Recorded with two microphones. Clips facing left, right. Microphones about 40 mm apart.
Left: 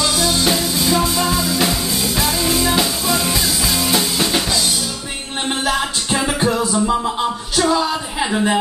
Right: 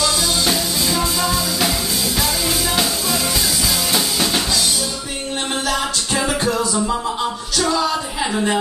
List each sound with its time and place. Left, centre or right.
0.0 s music: centre
6.1 s music: centre